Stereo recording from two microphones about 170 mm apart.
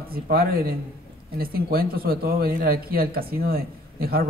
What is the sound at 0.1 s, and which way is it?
Speech, 60° right (ahead or behind).